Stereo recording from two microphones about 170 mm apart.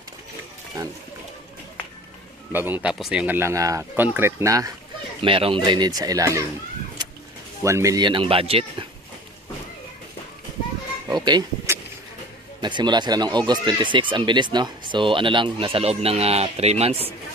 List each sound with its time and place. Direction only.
2.5 s speech: 10° right (ahead or behind)
5.2 s speech: 30° right (ahead or behind)
7.6 s speech: 20° right (ahead or behind); by 8.8 s 35° right (ahead or behind)
11.1 s a sound: 25° right (ahead or behind)
12.6 s speech: 25° right (ahead or behind)